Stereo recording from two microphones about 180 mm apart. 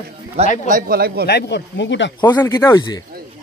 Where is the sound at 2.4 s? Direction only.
15° left (ahead or behind).